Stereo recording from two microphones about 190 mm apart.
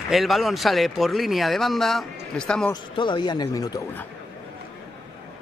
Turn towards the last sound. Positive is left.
turn(degrees=20)  # may be behind; listen again after turning